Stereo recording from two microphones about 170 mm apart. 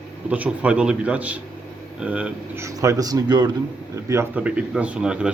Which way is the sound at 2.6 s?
20° right (ahead or behind).